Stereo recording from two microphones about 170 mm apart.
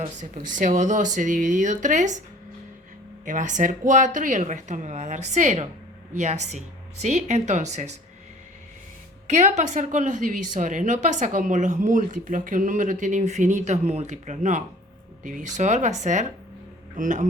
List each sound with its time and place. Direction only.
0.0 s a woman's voice: 50° right (ahead or behind)
3.2 s a woman's voice: 45° right (ahead or behind)
9.2 s a woman's voice: 45° right (ahead or behind)